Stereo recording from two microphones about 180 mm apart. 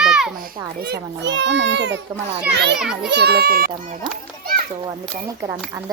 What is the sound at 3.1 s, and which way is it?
Speech, 65° right (ahead or behind).